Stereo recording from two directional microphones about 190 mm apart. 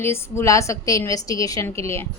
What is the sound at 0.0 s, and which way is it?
A woman's voice, 15° left (ahead or behind).